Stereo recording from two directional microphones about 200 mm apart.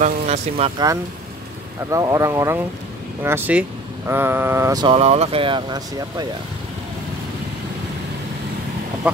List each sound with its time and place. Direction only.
0.0 s speech: 30° right (ahead or behind)
1.9 s speech: 15° right (ahead or behind)